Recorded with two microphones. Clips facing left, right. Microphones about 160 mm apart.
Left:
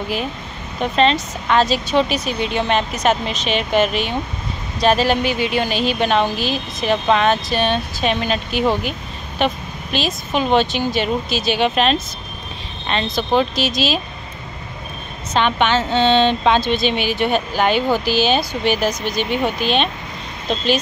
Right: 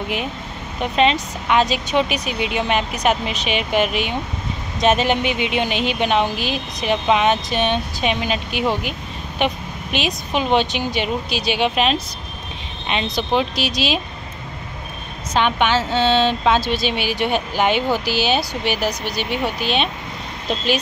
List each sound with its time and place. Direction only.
0.9 s speech: 10° right (ahead or behind)
5.3 s speech: 35° left (ahead or behind)
5.6 s speech: 20° right (ahead or behind)
9.4 s speech: 15° right (ahead or behind)
15.3 s speech: 10° right (ahead or behind)
19.0 s speech: 45° left (ahead or behind)
20.4 s speech: 10° right (ahead or behind)